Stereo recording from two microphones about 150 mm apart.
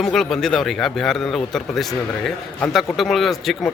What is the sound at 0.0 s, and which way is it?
Speech, centre (ahead or behind).